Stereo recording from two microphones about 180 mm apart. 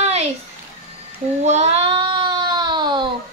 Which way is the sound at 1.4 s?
35° right (ahead or behind).